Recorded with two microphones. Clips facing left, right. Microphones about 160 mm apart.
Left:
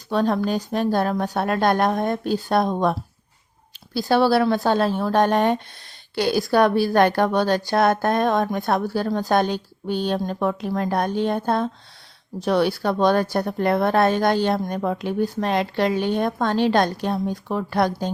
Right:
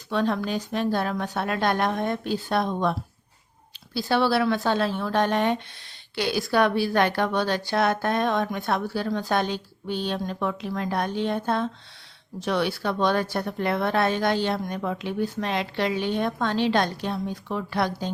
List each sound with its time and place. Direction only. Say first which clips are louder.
0.1 s speech: left 4 dB; 40° left (ahead or behind)
3.9 s a woman's voice: left 4 dB; 40° left (ahead or behind)